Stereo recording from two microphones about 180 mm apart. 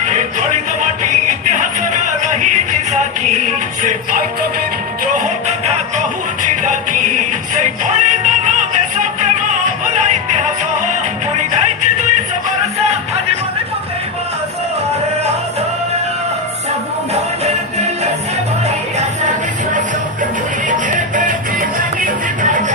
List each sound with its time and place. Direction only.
0.0 s music: 45° right (ahead or behind)
2.9 s music: 40° right (ahead or behind)
20.7 s music: 45° right (ahead or behind)